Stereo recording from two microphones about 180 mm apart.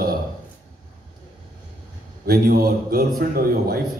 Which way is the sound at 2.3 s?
55° right (ahead or behind).